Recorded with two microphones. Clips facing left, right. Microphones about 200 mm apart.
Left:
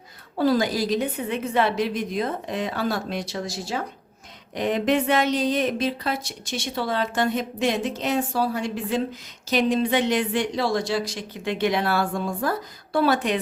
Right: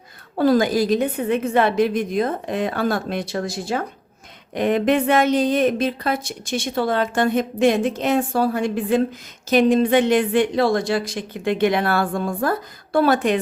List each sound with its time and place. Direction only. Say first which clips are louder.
0.3 s a woman's voice: right 4 dB; 55° right (ahead or behind)